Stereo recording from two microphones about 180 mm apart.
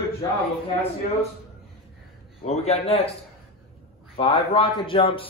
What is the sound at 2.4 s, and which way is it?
Speech, 35° left (ahead or behind).